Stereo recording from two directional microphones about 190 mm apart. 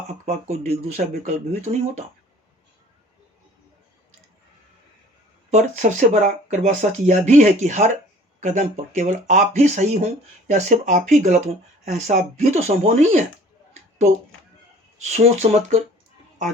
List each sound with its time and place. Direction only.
0.3 s speech: 35° right (ahead or behind)
5.5 s speech: 40° right (ahead or behind)
15.1 s speech: 35° right (ahead or behind)